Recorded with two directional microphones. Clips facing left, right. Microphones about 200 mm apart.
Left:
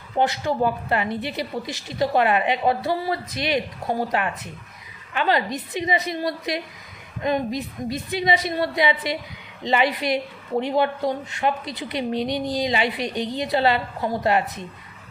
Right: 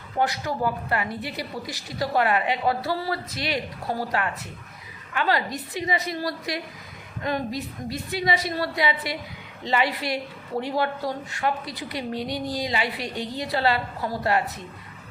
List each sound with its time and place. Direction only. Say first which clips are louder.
0.2 s a woman's voice: left 4 dB; 25° left (ahead or behind)